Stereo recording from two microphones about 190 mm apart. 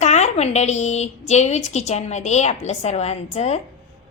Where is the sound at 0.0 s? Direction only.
35° left (ahead or behind).